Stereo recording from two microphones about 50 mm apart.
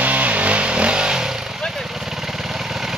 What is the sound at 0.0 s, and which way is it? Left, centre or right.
Vehicle, right.